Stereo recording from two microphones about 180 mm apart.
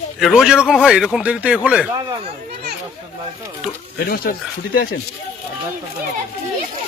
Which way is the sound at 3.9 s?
55° left (ahead or behind).